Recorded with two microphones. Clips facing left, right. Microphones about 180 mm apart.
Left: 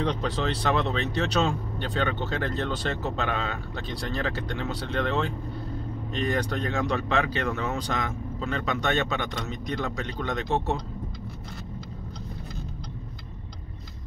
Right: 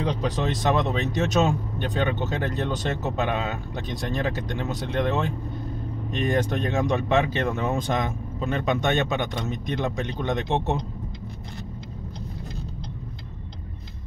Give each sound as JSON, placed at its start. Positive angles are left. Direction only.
{"t": 0.0, "sound": "speech", "side_deg": -10}